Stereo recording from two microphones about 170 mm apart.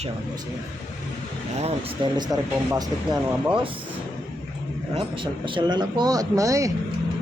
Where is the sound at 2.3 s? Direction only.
20° right (ahead or behind).